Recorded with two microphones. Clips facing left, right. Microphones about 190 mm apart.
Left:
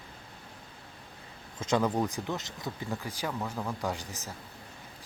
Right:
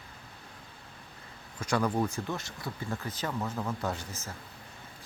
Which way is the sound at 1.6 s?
20° left (ahead or behind).